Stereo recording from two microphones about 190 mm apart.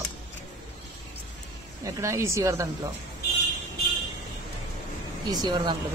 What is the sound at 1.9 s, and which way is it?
Speech, 15° right (ahead or behind).